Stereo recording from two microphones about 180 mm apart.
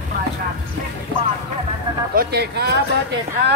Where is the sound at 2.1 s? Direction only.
65° right (ahead or behind).